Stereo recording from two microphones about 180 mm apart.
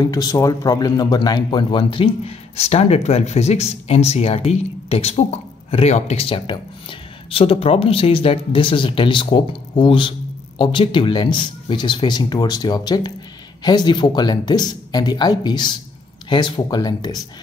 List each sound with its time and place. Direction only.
0.0 s speech: 20° left (ahead or behind)